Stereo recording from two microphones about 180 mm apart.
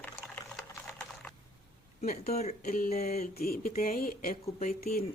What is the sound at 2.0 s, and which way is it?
Speech, 35° left (ahead or behind).